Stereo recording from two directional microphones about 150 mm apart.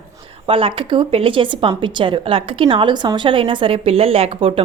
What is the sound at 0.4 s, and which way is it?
A woman's voice, 35° right (ahead or behind).